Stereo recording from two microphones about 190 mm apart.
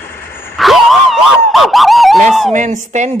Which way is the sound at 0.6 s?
Centre (ahead or behind).